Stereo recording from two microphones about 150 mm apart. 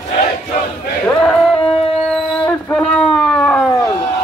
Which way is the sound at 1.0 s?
5° left (ahead or behind).